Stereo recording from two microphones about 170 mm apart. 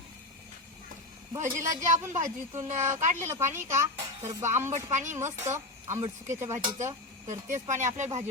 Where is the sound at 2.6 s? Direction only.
45° right (ahead or behind).